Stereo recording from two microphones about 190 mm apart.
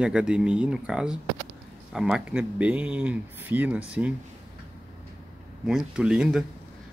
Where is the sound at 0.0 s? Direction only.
5° right (ahead or behind).